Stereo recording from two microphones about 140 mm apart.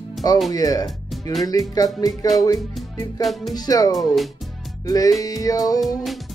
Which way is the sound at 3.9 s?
Centre (ahead or behind).